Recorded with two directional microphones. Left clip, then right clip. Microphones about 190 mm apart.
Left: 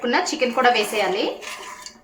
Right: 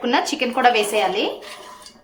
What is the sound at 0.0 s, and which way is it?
Speech, 30° right (ahead or behind).